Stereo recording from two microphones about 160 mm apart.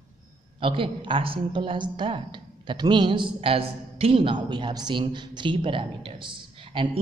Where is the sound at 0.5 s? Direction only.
30° right (ahead or behind).